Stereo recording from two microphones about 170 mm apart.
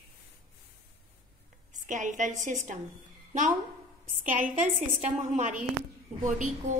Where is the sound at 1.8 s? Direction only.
45° right (ahead or behind).